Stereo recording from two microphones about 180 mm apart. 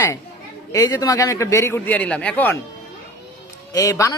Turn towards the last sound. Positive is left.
turn(degrees=20)  # may be behind; listen again after turning